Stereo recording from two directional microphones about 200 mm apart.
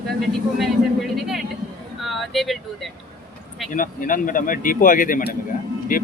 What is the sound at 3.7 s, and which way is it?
Speech, 45° left (ahead or behind).